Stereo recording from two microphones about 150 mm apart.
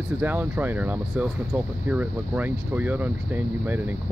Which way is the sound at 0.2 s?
10° right (ahead or behind).